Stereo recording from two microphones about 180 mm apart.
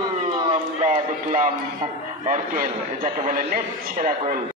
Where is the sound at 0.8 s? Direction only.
45° right (ahead or behind).